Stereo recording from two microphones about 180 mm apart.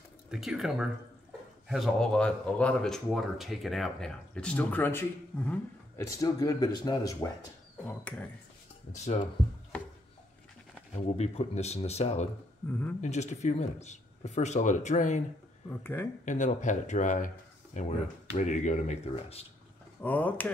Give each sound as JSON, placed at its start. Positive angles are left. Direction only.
{"t": 0.3, "sound": "speech", "side_deg": 0}
{"t": 8.9, "sound": "speech", "side_deg": 35}
{"t": 11.0, "sound": "speech", "side_deg": 35}
{"t": 12.6, "sound": "speech", "side_deg": 10}
{"t": 13.0, "sound": "speech", "side_deg": 40}
{"t": 15.7, "sound": "speech", "side_deg": 10}
{"t": 16.3, "sound": "speech", "side_deg": 45}
{"t": 20.0, "sound": "speech", "side_deg": 10}